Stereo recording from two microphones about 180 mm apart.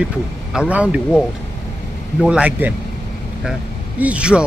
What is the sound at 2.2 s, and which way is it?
Speech, 5° right (ahead or behind).